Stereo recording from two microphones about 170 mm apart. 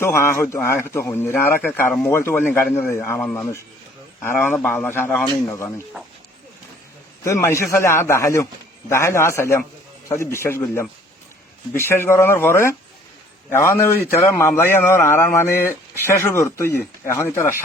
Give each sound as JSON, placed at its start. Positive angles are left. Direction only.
{"t": 0.0, "sound": "a man's voice", "side_deg": 15}
{"t": 7.3, "sound": "a man's voice", "side_deg": 15}